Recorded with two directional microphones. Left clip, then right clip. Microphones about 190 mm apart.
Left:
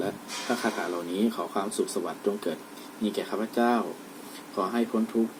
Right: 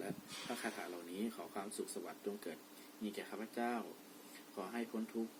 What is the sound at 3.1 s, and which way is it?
Speech, 5° right (ahead or behind).